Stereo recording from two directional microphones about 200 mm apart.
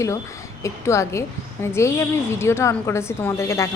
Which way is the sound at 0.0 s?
15° left (ahead or behind).